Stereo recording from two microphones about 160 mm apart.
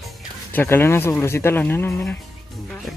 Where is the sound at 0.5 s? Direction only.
15° left (ahead or behind).